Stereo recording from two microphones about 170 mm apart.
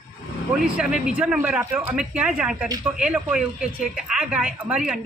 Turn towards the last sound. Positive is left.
turn(degrees=-5)  # may be behind; listen again after turning